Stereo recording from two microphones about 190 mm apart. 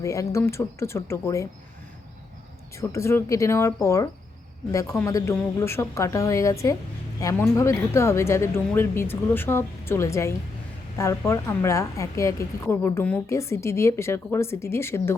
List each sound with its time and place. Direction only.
0.0 s speech: 15° left (ahead or behind)
2.7 s speech: 15° left (ahead or behind)